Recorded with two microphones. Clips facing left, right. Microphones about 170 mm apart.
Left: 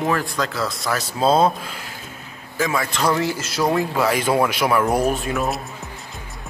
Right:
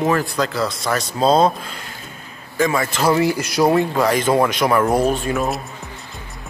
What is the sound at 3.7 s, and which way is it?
A man's voice, 5° left (ahead or behind).